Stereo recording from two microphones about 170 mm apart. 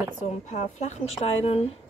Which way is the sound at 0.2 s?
45° left (ahead or behind).